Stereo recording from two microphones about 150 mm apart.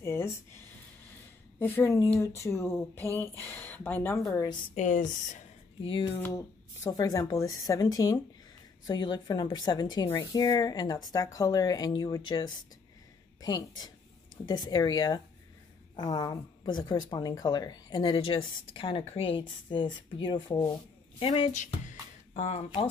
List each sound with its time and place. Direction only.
0.0 s a sound: 15° left (ahead or behind)
1.6 s a woman's voice: 15° left (ahead or behind)
4.3 s a woman's voice: 25° left (ahead or behind)
4.7 s speech: 55° left (ahead or behind)
5.8 s speech: 35° left (ahead or behind)
6.1 s a woman's voice: 15° left (ahead or behind)
21.2 s speech: 40° left (ahead or behind)
21.8 s music: 50° left (ahead or behind)